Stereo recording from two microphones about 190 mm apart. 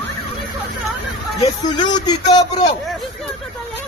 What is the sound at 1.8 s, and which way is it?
Speech, 20° left (ahead or behind).